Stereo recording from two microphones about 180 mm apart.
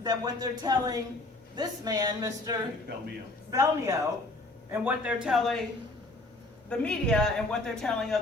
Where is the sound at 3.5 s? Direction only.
15° right (ahead or behind); by 5.6 s centre (ahead or behind).